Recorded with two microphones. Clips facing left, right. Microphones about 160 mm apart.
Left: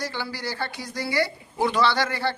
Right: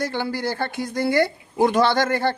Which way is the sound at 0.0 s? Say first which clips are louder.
Right 7 dB; 55° right (ahead or behind).